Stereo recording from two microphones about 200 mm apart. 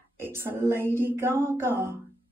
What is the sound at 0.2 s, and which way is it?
Speech, 10° right (ahead or behind).